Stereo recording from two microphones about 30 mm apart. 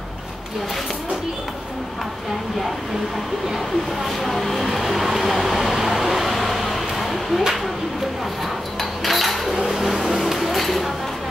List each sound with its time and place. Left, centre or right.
3.5 s speech: centre
4.3 s vehicle: centre
9.0 s a sound: centre
9.7 s speech: centre